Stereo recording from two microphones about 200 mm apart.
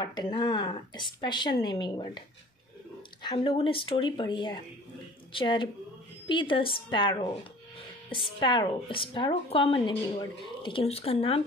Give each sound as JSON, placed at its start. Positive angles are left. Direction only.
{"t": 0.0, "sound": "speech", "side_deg": 20}